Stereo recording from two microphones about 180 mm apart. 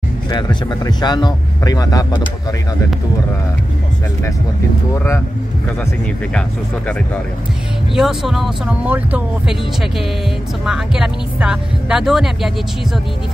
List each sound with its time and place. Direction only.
0.3 s speech: 25° left (ahead or behind)
7.9 s speech: centre (ahead or behind)
10.6 s speech: 5° right (ahead or behind)